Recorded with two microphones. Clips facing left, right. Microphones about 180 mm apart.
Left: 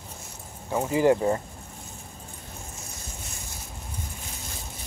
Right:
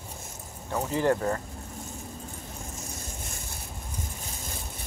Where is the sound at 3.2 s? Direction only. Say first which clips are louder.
Right 1 dB; 50° right (ahead or behind).